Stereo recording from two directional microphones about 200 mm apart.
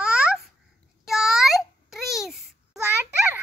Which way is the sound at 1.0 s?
Centre (ahead or behind).